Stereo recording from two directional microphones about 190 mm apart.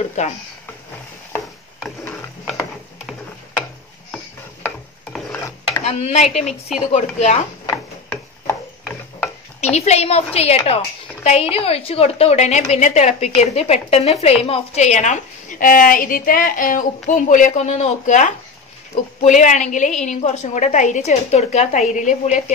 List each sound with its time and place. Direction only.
0.2 s a woman's voice: 35° left (ahead or behind)
2.0 s a sound: 10° left (ahead or behind)
5.1 s filing: centre (ahead or behind)
5.9 s a woman's voice: 35° left (ahead or behind)
7.7 s a sound: 10° left (ahead or behind)
9.6 s a woman's voice: 35° left (ahead or behind)